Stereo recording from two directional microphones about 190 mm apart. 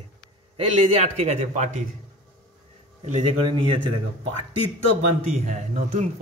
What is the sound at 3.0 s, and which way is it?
Speech, 35° right (ahead or behind).